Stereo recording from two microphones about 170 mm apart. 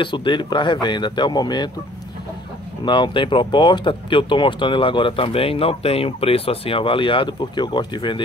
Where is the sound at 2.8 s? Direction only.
25° left (ahead or behind).